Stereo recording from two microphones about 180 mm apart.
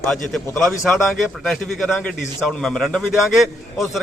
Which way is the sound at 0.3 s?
Centre (ahead or behind).